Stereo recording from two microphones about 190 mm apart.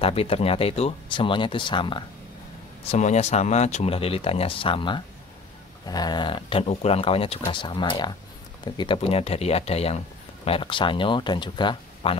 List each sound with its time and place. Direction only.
0.0 s speech: 30° left (ahead or behind)
2.8 s speech: 35° left (ahead or behind)